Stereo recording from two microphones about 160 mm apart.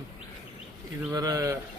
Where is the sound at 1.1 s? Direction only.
20° right (ahead or behind).